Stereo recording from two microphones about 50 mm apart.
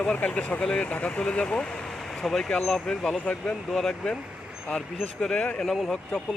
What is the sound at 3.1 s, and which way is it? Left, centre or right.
Speech, left.